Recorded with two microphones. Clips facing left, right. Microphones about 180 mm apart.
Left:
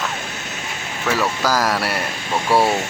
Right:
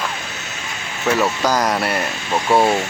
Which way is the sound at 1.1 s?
20° right (ahead or behind).